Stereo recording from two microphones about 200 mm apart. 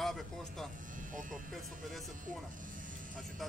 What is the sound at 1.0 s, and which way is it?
Speech, 40° right (ahead or behind).